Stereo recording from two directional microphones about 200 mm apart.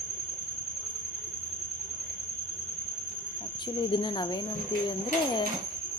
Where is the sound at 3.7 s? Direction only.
20° left (ahead or behind).